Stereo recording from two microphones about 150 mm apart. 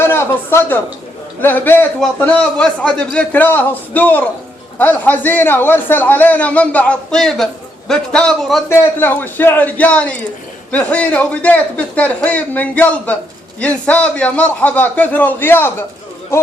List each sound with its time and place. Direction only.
0.0 s a man's voice: 15° left (ahead or behind)
8.7 s a man's voice: 15° left (ahead or behind)